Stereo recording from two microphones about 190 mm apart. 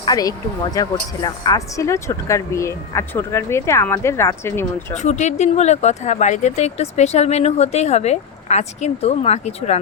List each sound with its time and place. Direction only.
0.0 s a woman's voice: 20° left (ahead or behind)
4.9 s speech: 40° left (ahead or behind)